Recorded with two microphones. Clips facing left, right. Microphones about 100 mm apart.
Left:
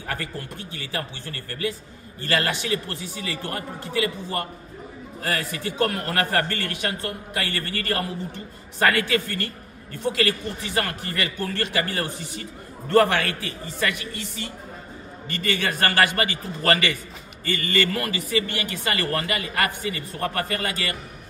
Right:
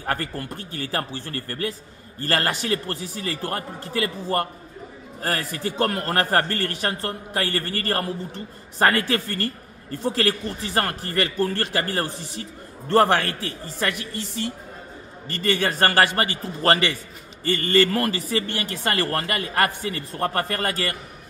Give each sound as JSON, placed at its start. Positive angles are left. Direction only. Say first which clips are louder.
{"t": 0.0, "sound": "a man's voice", "louder": "right 4 dB", "side_deg": -50}
{"t": 15.2, "sound": "speech", "louder": "right 3 dB", "side_deg": -35}